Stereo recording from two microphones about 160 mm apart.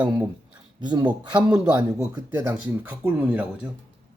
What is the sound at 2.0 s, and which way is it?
Speech, 20° right (ahead or behind).